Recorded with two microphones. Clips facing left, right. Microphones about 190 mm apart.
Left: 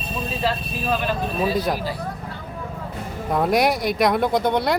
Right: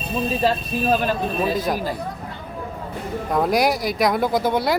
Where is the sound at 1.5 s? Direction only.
Centre (ahead or behind).